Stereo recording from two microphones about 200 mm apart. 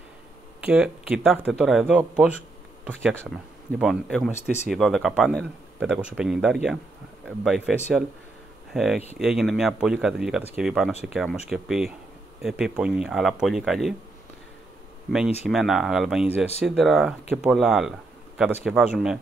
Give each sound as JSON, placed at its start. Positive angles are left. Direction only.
{"t": 0.7, "sound": "speech", "side_deg": -5}
{"t": 8.7, "sound": "speech", "side_deg": 0}
{"t": 15.4, "sound": "speech", "side_deg": 0}